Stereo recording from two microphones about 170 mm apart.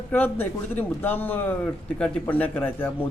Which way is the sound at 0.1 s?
10° left (ahead or behind).